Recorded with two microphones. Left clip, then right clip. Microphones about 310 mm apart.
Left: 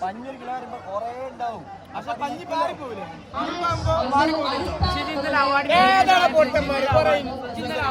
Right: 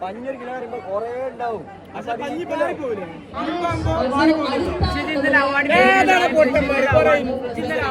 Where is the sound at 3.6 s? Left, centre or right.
Left.